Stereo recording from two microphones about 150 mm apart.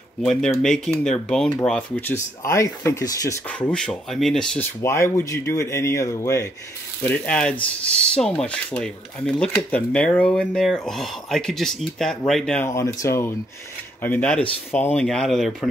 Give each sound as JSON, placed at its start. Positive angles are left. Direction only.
{"t": 0.2, "sound": "speech", "side_deg": 5}
{"t": 3.4, "sound": "speech", "side_deg": 10}
{"t": 4.8, "sound": "speech", "side_deg": 20}
{"t": 7.0, "sound": "speech", "side_deg": 10}
{"t": 12.6, "sound": "speech", "side_deg": 20}
{"t": 14.0, "sound": "speech", "side_deg": 10}